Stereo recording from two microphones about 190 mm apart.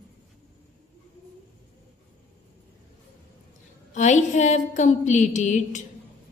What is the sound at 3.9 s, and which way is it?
Speech, 40° left (ahead or behind).